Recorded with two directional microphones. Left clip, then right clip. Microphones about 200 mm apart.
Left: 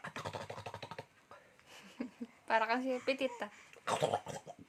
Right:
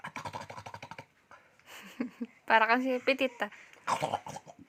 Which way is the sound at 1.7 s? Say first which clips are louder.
Right 7 dB; 40° right (ahead or behind).